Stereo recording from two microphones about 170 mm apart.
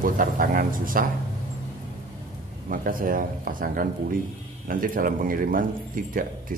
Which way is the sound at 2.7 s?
55° right (ahead or behind).